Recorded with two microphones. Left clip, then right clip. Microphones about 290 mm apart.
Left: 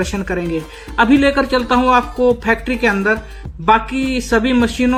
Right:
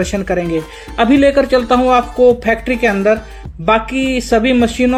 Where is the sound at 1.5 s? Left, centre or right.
Right.